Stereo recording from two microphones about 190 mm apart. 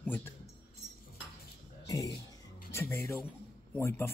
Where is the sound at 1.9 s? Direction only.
15° left (ahead or behind).